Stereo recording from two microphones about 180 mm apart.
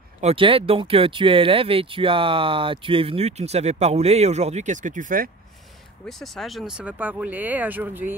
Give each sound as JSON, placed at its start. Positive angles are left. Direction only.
{"t": 0.2, "sound": "speech", "side_deg": -30}
{"t": 6.0, "sound": "speech", "side_deg": 0}